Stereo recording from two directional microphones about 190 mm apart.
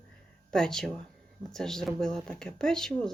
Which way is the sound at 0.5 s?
5° left (ahead or behind).